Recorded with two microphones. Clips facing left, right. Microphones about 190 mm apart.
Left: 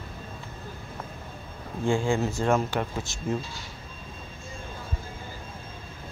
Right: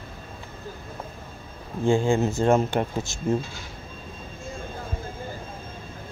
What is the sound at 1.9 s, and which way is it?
Speech, 20° right (ahead or behind).